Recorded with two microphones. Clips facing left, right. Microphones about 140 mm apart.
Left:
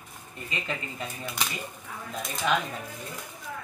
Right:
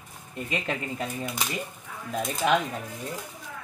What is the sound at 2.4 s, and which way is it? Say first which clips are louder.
Speech: right 3 dB; 55° right (ahead or behind).